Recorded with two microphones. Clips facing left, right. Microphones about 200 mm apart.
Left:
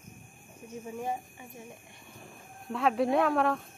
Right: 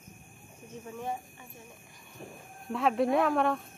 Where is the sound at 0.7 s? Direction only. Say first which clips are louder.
Left 2 dB; 10° left (ahead or behind).